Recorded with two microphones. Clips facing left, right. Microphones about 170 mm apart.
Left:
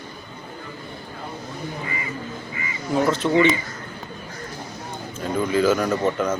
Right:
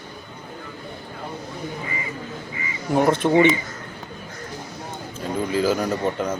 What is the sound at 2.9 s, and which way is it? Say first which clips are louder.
Speech: right 2 dB; 55° right (ahead or behind).